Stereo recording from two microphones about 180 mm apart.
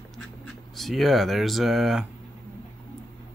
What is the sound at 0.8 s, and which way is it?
Speech, centre (ahead or behind).